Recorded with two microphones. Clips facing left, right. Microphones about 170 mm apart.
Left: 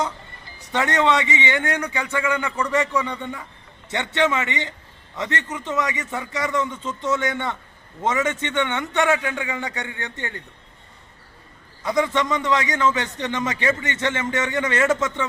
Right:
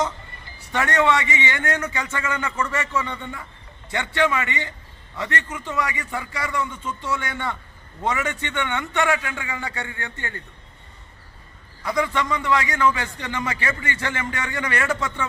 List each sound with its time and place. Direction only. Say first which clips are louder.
0.7 s a man's voice: even; 20° left (ahead or behind)
11.8 s a man's voice: left 2 dB; 20° left (ahead or behind)